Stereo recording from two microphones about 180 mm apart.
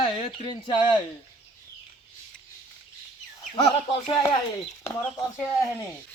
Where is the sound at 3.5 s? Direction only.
30° left (ahead or behind).